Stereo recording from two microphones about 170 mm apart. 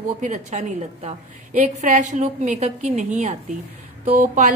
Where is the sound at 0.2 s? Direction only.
45° right (ahead or behind).